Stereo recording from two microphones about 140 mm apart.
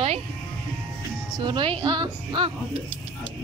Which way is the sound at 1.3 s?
35° right (ahead or behind).